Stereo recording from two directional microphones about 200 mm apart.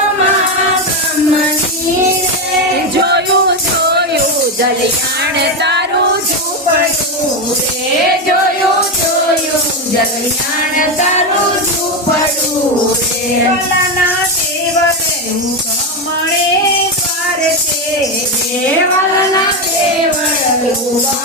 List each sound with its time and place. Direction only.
3.0 s music: 60° right (ahead or behind)
5.2 s music: 55° right (ahead or behind)